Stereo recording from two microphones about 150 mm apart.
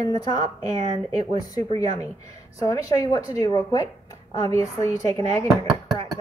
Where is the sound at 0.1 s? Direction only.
25° left (ahead or behind).